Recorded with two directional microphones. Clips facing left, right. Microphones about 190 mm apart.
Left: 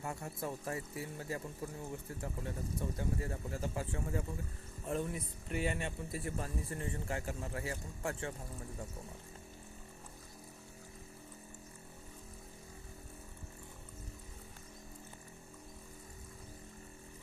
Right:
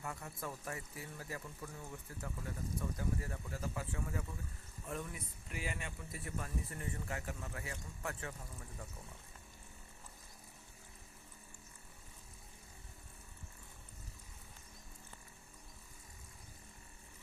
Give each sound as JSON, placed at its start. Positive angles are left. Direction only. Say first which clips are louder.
{"t": 0.0, "sound": "speech", "louder": "left 4 dB", "side_deg": 30}